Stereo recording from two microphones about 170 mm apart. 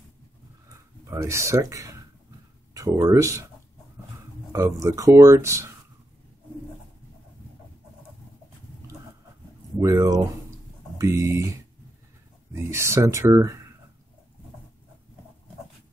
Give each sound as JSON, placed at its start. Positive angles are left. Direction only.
{"t": 1.0, "sound": "speech", "side_deg": -15}
{"t": 4.5, "sound": "speech", "side_deg": -15}
{"t": 9.8, "sound": "speech", "side_deg": -20}
{"t": 12.5, "sound": "speech", "side_deg": -15}